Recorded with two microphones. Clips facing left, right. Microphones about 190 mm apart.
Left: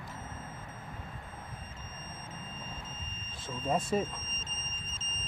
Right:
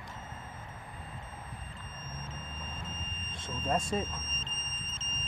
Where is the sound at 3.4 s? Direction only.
10° left (ahead or behind).